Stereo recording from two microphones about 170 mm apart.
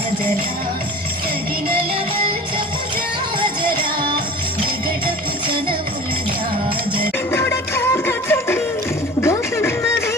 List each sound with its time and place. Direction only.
3.4 s music: 25° right (ahead or behind)
7.3 s music: 15° left (ahead or behind)
9.2 s a sound: 15° left (ahead or behind)